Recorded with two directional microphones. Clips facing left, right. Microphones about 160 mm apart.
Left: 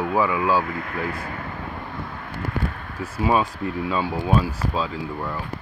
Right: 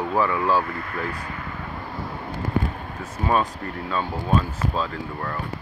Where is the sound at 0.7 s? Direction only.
40° right (ahead or behind).